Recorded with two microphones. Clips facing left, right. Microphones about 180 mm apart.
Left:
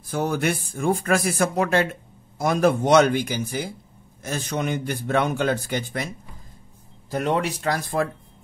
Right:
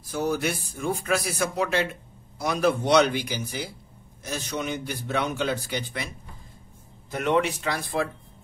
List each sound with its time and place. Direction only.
0.1 s a man's voice: 55° left (ahead or behind)
7.1 s speech: 35° left (ahead or behind)